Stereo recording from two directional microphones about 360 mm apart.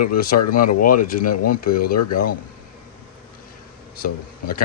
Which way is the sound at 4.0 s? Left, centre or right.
Left.